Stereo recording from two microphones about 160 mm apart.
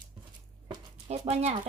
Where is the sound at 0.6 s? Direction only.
40° right (ahead or behind).